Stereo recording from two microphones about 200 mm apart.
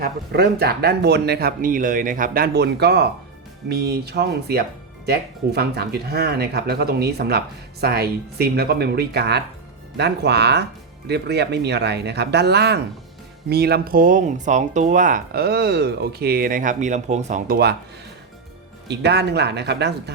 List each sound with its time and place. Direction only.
0.0 s speech: 50° right (ahead or behind); by 17.6 s 35° right (ahead or behind)
18.9 s speech: 55° right (ahead or behind)